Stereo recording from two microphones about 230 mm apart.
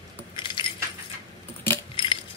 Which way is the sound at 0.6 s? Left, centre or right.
Left.